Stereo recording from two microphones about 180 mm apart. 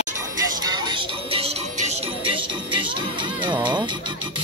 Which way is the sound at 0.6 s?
25° right (ahead or behind).